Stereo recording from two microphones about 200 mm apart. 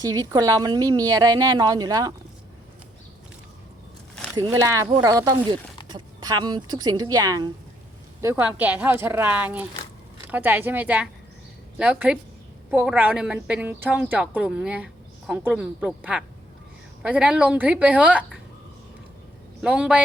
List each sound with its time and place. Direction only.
0.0 s a woman's voice: 15° right (ahead or behind)
4.2 s a sound: 5° left (ahead or behind)
4.5 s a woman's voice: 15° right (ahead or behind)
19.6 s speech: 5° right (ahead or behind)